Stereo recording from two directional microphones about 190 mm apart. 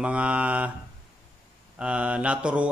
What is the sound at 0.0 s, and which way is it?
Mantra, 5° right (ahead or behind).